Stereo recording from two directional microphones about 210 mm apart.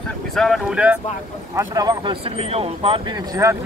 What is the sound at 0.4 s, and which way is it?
Speech, centre (ahead or behind).